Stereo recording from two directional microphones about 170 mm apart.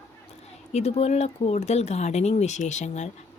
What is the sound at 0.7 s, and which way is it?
Speech, 40° left (ahead or behind).